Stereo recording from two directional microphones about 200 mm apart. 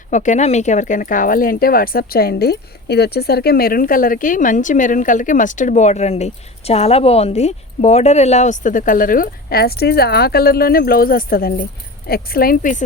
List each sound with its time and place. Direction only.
0.1 s speech: 35° left (ahead or behind)